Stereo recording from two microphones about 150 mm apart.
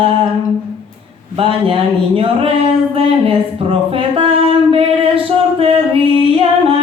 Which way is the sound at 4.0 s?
35° right (ahead or behind).